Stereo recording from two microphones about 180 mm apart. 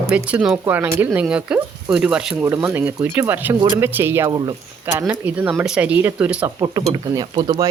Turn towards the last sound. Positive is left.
turn(degrees=-25)  # may be behind; listen again after turning